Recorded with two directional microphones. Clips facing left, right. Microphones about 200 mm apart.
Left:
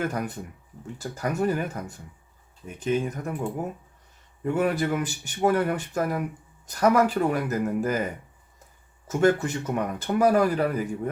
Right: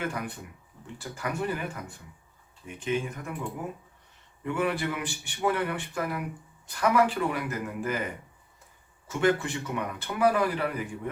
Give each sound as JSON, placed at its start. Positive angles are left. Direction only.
{"t": 0.0, "sound": "a man's voice", "side_deg": 40}
{"t": 4.4, "sound": "a man's voice", "side_deg": 40}